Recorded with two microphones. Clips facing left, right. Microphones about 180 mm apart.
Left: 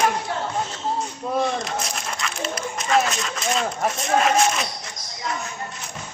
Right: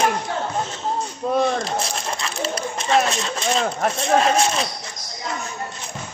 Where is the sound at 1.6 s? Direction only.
30° right (ahead or behind).